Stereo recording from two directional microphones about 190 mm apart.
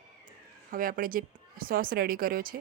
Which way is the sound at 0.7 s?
45° right (ahead or behind).